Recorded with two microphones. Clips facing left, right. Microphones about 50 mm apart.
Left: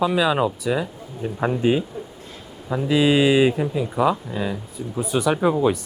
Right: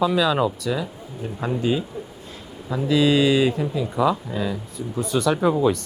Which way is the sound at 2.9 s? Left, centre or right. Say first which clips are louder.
Left 1 dB; left.